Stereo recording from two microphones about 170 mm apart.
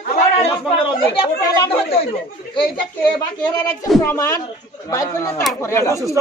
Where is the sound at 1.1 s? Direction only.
35° left (ahead or behind).